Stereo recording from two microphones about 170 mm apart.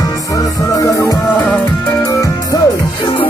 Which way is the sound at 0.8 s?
15° left (ahead or behind).